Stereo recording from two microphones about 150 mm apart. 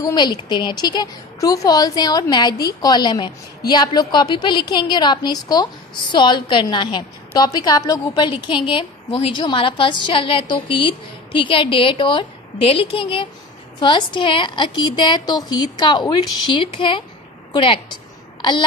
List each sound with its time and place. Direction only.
0.0 s a woman's voice: 30° left (ahead or behind)